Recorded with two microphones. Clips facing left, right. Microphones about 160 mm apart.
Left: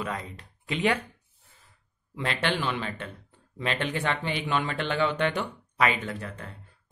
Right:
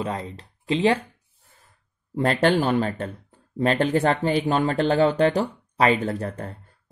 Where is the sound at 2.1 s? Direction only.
40° right (ahead or behind).